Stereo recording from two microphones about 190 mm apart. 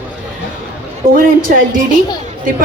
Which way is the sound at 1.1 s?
45° right (ahead or behind).